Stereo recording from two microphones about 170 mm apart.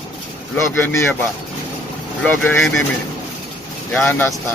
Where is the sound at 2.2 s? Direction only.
10° left (ahead or behind).